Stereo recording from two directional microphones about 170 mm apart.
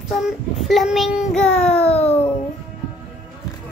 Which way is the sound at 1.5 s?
35° left (ahead or behind).